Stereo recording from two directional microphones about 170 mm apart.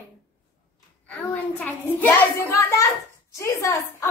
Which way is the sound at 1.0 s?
10° left (ahead or behind).